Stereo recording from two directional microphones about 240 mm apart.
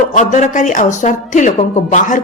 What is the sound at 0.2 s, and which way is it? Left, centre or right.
Speech, left.